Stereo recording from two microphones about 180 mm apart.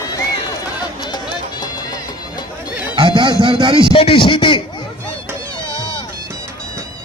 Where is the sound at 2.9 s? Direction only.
25° right (ahead or behind).